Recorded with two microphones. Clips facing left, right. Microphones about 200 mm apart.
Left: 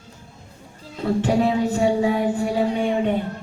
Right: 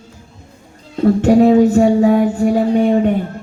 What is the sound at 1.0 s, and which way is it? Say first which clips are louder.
Music: right 9 dB; 45° right (ahead or behind).